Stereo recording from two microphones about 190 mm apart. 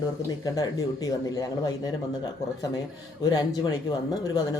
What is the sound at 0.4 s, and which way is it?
Speech, 20° left (ahead or behind).